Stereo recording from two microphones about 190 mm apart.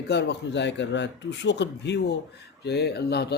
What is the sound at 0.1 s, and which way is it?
A man's voice, 60° left (ahead or behind).